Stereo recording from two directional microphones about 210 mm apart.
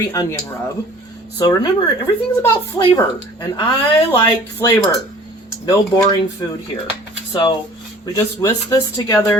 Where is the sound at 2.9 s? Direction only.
20° left (ahead or behind).